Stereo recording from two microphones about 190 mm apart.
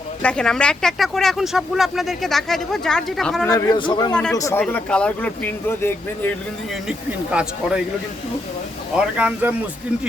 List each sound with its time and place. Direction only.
0.2 s speech: 5° left (ahead or behind)
3.5 s a man's voice: 25° left (ahead or behind)
4.1 s speech: 5° left (ahead or behind)
4.4 s speech: 15° left (ahead or behind)
4.6 s speech: 5° left (ahead or behind)
6.8 s speech: 5° right (ahead or behind)
9.0 s speech: 5° right (ahead or behind)